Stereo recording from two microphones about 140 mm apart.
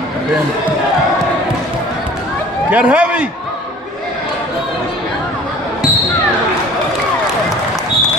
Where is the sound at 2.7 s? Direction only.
10° right (ahead or behind).